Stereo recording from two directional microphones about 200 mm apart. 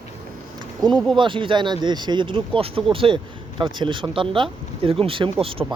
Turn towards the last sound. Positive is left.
turn(degrees=-25)  # may be behind; listen again after turning